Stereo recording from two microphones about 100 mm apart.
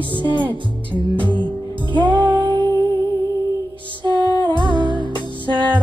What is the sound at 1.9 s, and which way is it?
Music, 55° right (ahead or behind).